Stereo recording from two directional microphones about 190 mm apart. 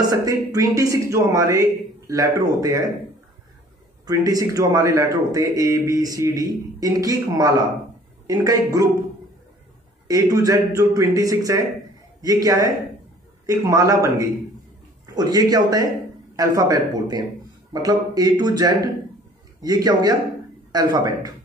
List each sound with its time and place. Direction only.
0.0 s a man's voice: 20° right (ahead or behind)
4.0 s a man's voice: 20° right (ahead or behind)
10.0 s a man's voice: 20° right (ahead or behind)